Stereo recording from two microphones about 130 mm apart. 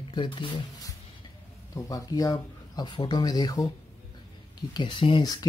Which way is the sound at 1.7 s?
30° left (ahead or behind).